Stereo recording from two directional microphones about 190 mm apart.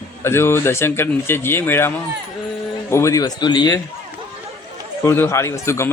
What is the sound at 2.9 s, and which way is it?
Speech, 15° left (ahead or behind).